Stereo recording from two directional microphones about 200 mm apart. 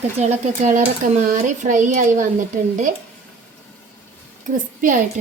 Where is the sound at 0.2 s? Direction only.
35° right (ahead or behind).